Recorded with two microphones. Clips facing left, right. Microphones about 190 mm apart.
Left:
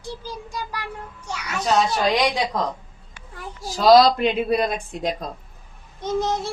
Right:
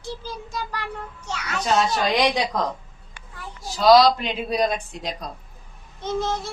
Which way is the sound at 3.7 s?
45° left (ahead or behind).